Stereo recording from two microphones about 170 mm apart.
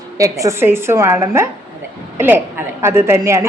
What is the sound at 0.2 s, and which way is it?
A woman's voice, 20° right (ahead or behind).